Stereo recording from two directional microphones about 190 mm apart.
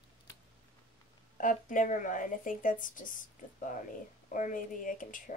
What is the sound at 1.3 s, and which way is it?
Speech, 45° left (ahead or behind).